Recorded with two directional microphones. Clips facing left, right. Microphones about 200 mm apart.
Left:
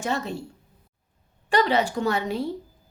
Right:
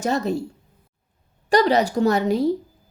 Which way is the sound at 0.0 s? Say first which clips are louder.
Right 6 dB; 40° right (ahead or behind).